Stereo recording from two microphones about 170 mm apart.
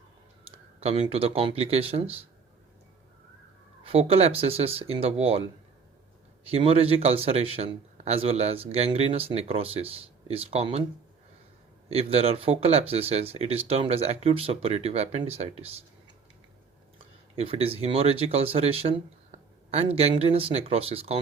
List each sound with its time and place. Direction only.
0.8 s a man's voice: 35° right (ahead or behind)
3.8 s a man's voice: 35° right (ahead or behind)
6.5 s a man's voice: 35° right (ahead or behind)
11.9 s a man's voice: 35° right (ahead or behind)
17.3 s a man's voice: 35° right (ahead or behind)